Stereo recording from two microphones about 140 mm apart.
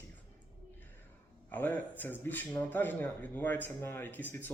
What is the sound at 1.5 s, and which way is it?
Speech, 15° left (ahead or behind).